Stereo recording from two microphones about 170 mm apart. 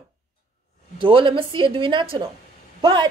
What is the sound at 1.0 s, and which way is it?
Speech, 30° right (ahead or behind).